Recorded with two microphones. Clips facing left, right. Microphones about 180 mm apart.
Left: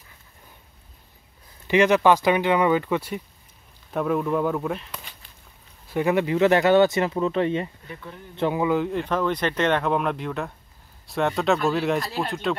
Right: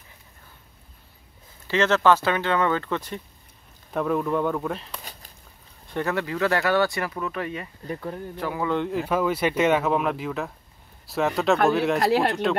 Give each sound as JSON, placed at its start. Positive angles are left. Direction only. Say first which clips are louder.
{"t": 1.7, "sound": "speech", "louder": "left 2 dB", "side_deg": 15}
{"t": 5.1, "sound": "a sound", "louder": "right 4 dB", "side_deg": -40}
{"t": 5.9, "sound": "speech", "louder": "left 5 dB", "side_deg": 10}
{"t": 7.8, "sound": "speech", "louder": "right 8 dB", "side_deg": -40}
{"t": 8.4, "sound": "speech", "louder": "left 7 dB", "side_deg": 25}
{"t": 8.6, "sound": "speech", "louder": "left 2 dB", "side_deg": 0}